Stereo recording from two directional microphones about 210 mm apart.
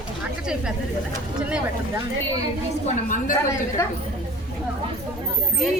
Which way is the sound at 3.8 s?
10° left (ahead or behind).